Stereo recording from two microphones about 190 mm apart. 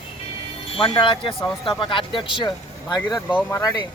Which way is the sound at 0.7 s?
25° left (ahead or behind).